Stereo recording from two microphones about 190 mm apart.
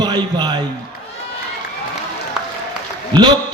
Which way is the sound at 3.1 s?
25° right (ahead or behind).